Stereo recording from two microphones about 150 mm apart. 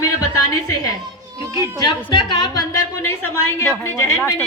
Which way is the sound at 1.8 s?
30° left (ahead or behind).